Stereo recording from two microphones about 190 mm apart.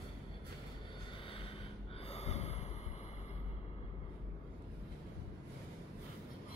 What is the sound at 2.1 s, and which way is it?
Gasp, 35° left (ahead or behind).